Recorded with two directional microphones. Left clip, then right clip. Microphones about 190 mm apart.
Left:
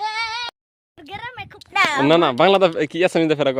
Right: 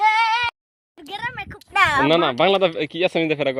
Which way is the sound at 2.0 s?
25° left (ahead or behind).